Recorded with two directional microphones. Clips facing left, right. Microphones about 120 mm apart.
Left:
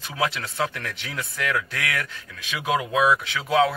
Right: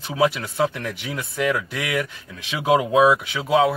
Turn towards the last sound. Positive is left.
turn(degrees=-15)  # may be behind; listen again after turning